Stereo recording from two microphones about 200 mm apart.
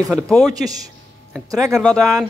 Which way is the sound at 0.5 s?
20° right (ahead or behind).